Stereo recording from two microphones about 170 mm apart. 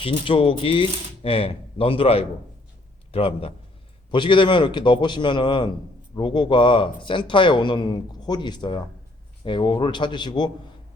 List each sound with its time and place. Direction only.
0.0 s speech: 30° left (ahead or behind)